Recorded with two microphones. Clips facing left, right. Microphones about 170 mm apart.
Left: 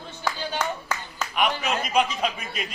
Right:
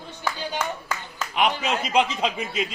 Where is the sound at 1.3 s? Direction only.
25° right (ahead or behind).